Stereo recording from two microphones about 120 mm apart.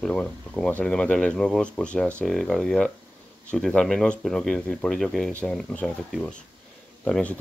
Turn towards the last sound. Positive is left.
turn(degrees=10)  # may be behind; listen again after turning